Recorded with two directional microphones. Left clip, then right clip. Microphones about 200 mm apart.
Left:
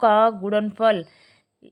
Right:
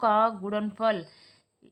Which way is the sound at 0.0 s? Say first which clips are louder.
Left 6 dB; 35° left (ahead or behind).